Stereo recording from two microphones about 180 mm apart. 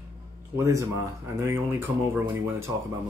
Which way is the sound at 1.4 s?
15° right (ahead or behind).